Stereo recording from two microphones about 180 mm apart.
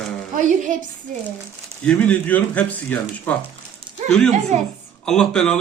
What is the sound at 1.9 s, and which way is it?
A man's voice, 10° left (ahead or behind).